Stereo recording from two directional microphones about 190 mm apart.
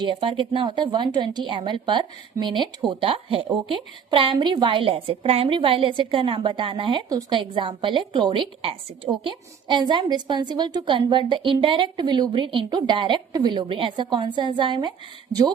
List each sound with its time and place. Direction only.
0.0 s a woman's voice: 25° right (ahead or behind)